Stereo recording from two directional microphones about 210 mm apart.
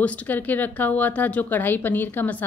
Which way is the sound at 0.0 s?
5° left (ahead or behind).